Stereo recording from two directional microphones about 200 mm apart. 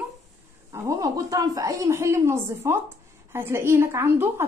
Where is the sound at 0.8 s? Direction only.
15° right (ahead or behind).